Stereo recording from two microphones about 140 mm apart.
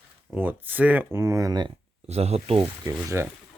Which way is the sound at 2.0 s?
50° right (ahead or behind).